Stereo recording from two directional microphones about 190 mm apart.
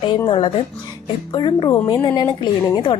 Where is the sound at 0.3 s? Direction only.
30° left (ahead or behind).